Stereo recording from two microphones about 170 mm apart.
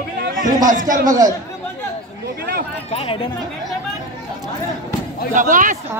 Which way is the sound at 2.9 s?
35° left (ahead or behind).